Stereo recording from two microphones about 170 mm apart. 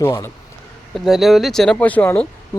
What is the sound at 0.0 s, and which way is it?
Speech, 15° left (ahead or behind).